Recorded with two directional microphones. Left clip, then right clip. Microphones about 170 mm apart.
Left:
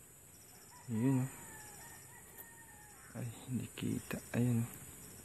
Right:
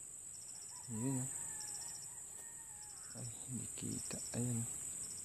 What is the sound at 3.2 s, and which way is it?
Speech, 15° right (ahead or behind).